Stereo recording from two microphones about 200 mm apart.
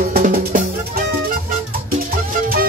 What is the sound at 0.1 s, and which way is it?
Music, 45° right (ahead or behind).